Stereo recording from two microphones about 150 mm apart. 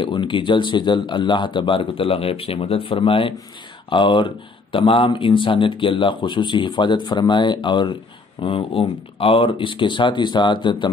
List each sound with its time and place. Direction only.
0.0 s speech: 30° left (ahead or behind)